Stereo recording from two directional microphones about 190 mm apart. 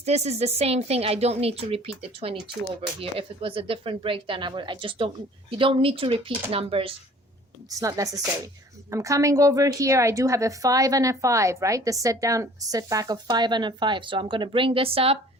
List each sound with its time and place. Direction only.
0.0 s a woman's voice: 35° right (ahead or behind)
7.7 s a woman's voice: 15° right (ahead or behind)